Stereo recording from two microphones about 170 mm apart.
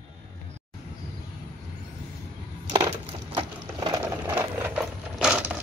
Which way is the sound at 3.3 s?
30° right (ahead or behind).